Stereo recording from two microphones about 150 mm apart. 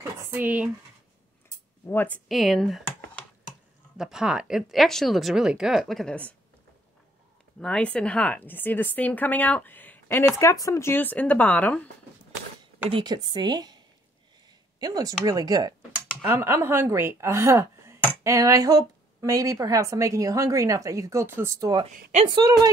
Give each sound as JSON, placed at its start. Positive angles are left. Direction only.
{"t": 0.3, "sound": "speech", "side_deg": -10}
{"t": 1.9, "sound": "speech", "side_deg": 10}
{"t": 2.2, "sound": "speech", "side_deg": 0}
{"t": 7.6, "sound": "speech", "side_deg": 5}
{"t": 12.9, "sound": "a woman's voice", "side_deg": -30}
{"t": 14.8, "sound": "a woman's voice", "side_deg": -25}